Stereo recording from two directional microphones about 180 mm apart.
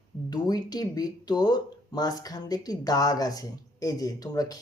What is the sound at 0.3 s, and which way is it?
Speech, 20° left (ahead or behind).